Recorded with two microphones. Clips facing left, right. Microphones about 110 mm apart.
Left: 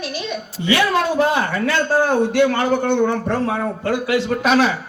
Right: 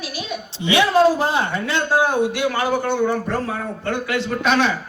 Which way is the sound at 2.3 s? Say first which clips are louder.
Left 4 dB; 50° left (ahead or behind).